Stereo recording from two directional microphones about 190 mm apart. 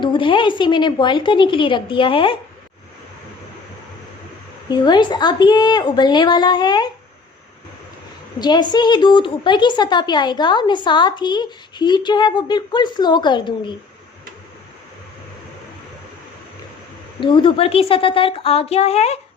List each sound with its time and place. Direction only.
0.0 s speech: 25° left (ahead or behind)
4.7 s speech: 25° left (ahead or behind)
8.4 s speech: 20° left (ahead or behind)
17.2 s speech: 25° left (ahead or behind)